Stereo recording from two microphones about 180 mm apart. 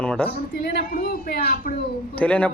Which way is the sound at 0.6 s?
55° left (ahead or behind).